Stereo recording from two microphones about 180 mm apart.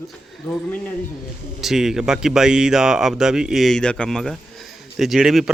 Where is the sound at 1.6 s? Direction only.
Centre (ahead or behind).